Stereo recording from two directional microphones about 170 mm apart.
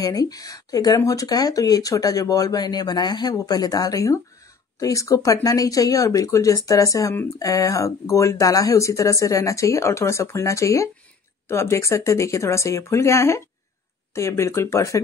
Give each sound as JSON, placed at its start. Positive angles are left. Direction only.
{"t": 0.0, "sound": "speech", "side_deg": 20}